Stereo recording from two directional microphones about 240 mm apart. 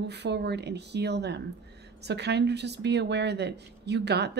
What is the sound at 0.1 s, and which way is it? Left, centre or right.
A woman's voice, right.